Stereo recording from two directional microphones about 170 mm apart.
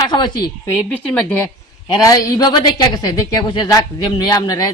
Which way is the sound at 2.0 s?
20° left (ahead or behind).